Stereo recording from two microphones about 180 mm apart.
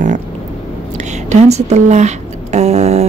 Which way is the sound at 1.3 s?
40° right (ahead or behind).